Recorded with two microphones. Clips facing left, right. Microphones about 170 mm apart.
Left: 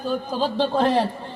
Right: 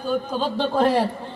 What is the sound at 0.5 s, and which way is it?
Speech, 10° right (ahead or behind).